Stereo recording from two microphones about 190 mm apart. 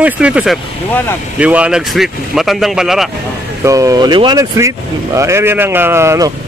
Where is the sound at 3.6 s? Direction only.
15° right (ahead or behind).